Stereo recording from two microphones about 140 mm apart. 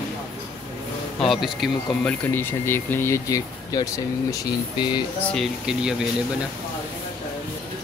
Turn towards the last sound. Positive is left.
turn(degrees=-5)  # may be behind; listen again after turning